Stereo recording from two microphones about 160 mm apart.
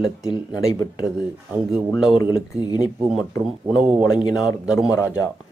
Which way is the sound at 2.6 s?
25° left (ahead or behind).